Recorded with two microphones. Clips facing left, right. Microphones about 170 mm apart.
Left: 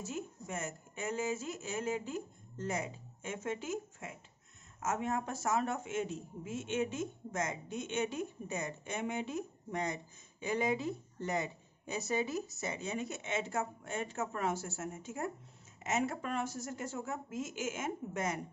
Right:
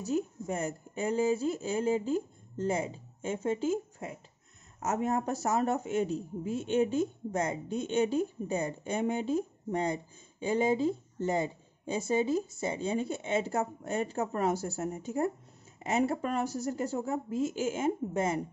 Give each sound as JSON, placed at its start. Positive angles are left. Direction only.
{"t": 0.5, "sound": "speech", "side_deg": -35}